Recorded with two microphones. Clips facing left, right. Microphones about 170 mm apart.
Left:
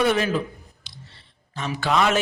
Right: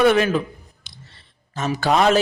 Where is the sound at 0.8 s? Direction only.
50° right (ahead or behind).